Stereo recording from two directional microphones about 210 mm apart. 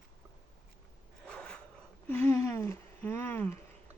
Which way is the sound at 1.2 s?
5° left (ahead or behind).